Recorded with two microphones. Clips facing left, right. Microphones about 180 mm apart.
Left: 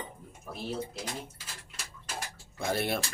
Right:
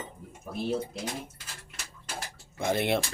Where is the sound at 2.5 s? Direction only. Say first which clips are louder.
Right 4 dB; 20° right (ahead or behind).